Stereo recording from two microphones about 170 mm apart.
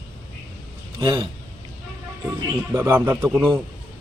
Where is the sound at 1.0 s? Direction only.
25° right (ahead or behind).